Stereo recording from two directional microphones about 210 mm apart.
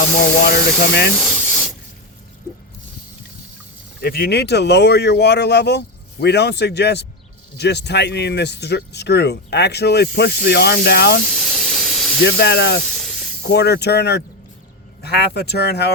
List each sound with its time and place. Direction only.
0.2 s speech: 50° left (ahead or behind)
1.1 s speech: 5° left (ahead or behind)
4.0 s speech: 45° left (ahead or behind)
11.3 s hiss: centre (ahead or behind)
12.2 s speech: 50° left (ahead or behind)
12.8 s hiss: 5° left (ahead or behind)
13.4 s speech: 50° left (ahead or behind)